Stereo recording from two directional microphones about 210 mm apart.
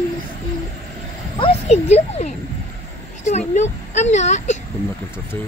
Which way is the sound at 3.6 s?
35° left (ahead or behind).